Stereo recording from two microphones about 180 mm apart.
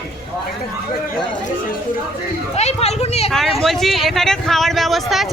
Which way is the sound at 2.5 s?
35° left (ahead or behind).